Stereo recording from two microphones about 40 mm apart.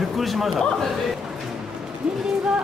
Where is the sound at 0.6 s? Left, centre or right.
Centre.